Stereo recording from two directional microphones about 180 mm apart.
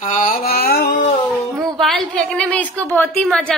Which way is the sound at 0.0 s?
45° left (ahead or behind).